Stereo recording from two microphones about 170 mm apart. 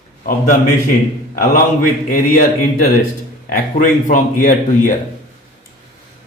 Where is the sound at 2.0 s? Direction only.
55° left (ahead or behind).